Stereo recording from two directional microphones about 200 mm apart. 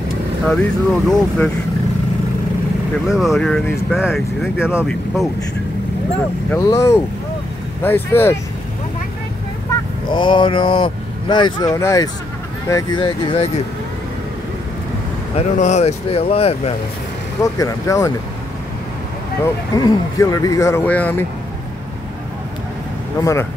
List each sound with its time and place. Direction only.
0.5 s speech: 5° left (ahead or behind)
3.2 s speech: centre (ahead or behind)
6.5 s speech: 15° left (ahead or behind)
10.1 s speech: 25° left (ahead or behind)
15.3 s speech: 35° left (ahead or behind)
17.4 s speech: 15° left (ahead or behind)
19.4 s speech: 20° left (ahead or behind)